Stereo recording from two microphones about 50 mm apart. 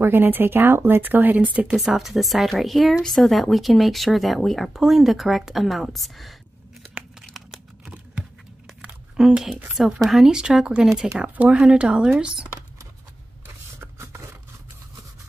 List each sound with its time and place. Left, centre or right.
0.0 s speech: right
1.7 s speech: centre
7.3 s crumpling: centre
7.9 s a sound: right
9.2 s speech: centre
13.7 s scrape: right